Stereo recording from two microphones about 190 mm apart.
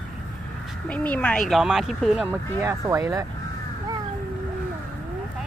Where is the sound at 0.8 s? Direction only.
5° left (ahead or behind).